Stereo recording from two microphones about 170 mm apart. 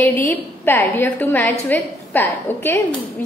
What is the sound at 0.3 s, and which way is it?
A woman's voice, 10° left (ahead or behind).